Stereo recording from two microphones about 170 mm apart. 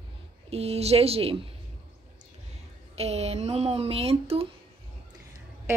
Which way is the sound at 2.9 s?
35° right (ahead or behind).